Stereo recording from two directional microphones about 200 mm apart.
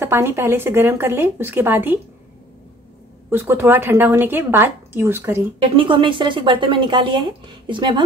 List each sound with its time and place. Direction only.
0.0 s a woman's voice: 10° right (ahead or behind)
3.3 s a woman's voice: 10° right (ahead or behind)
5.8 s speech: 25° right (ahead or behind)